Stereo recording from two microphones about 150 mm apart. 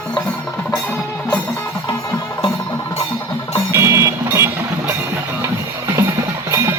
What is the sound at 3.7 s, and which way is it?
Vehicle, 20° right (ahead or behind).